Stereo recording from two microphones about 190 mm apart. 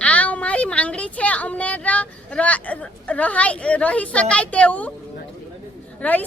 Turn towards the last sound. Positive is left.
turn(degrees=10)  # may be behind; listen again after turning